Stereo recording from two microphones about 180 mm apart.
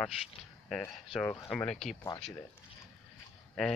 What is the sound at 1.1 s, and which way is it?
Speech, 5° left (ahead or behind).